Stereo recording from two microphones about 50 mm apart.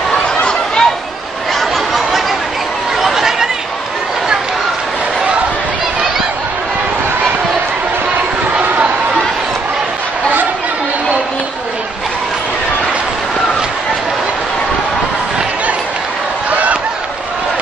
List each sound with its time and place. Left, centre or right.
0.4 s chatter: centre
3.0 s chatter: centre
8.5 s chatter: right
16.4 s a sound: right